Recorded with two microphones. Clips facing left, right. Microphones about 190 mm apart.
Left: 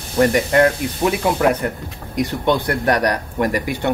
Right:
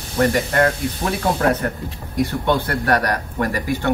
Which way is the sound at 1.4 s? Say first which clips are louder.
Left 1 dB; 10° left (ahead or behind).